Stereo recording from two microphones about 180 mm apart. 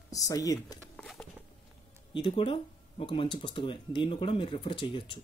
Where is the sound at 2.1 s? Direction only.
30° left (ahead or behind).